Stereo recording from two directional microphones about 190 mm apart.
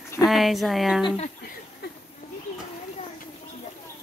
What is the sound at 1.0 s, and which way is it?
Speech, 30° left (ahead or behind).